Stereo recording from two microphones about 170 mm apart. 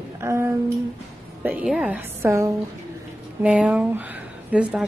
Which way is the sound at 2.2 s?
15° right (ahead or behind).